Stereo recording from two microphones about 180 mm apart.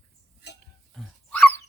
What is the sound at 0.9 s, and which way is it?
Dog, 5° left (ahead or behind).